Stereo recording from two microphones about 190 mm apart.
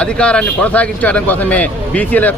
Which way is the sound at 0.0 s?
5° left (ahead or behind).